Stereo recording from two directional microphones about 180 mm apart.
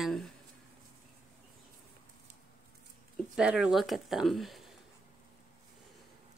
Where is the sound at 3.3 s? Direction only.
5° right (ahead or behind).